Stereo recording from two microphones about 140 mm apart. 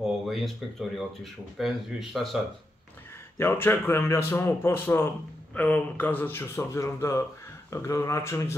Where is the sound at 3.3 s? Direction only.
15° left (ahead or behind).